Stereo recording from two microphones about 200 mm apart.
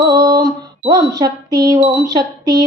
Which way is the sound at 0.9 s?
20° right (ahead or behind).